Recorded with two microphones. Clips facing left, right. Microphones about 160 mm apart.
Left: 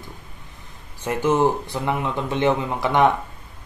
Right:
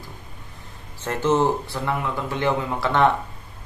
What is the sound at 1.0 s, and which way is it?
Speech, 10° left (ahead or behind).